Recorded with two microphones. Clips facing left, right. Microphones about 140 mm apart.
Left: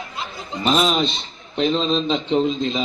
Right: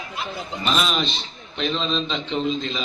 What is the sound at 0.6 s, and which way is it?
A man's voice, 25° left (ahead or behind).